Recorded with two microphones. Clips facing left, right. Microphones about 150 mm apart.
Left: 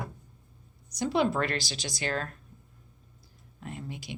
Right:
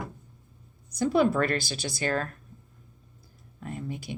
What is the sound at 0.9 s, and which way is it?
A woman's voice, 50° right (ahead or behind).